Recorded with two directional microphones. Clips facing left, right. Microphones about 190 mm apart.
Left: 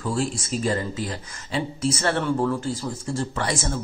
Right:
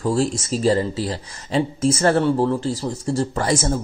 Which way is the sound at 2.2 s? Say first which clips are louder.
Right 4 dB; 30° right (ahead or behind).